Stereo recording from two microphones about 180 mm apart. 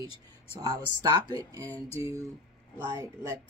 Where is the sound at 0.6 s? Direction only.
20° right (ahead or behind).